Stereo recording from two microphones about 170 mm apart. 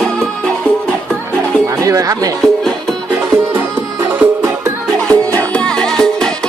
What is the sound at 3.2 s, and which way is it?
Music, 15° right (ahead or behind).